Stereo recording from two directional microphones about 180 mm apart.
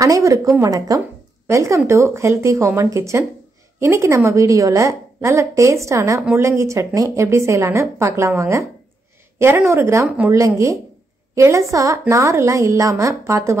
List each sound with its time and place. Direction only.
0.0 s a woman's voice: 20° right (ahead or behind)